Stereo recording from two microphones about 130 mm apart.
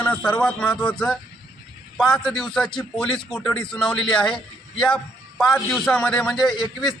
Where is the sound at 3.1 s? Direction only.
40° left (ahead or behind).